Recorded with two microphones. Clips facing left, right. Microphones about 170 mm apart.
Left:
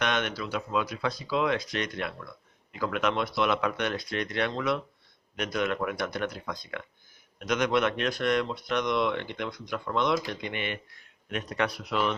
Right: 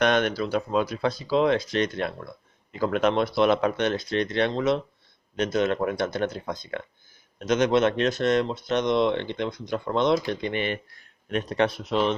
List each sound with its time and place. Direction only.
0.0 s speech: 40° right (ahead or behind)